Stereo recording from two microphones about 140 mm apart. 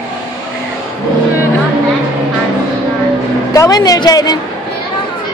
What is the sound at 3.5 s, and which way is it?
Speech, 25° left (ahead or behind).